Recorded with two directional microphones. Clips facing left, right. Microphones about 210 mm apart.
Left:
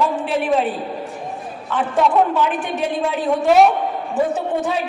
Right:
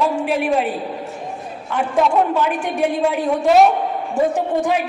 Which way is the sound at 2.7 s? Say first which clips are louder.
Right 3 dB; 10° right (ahead or behind).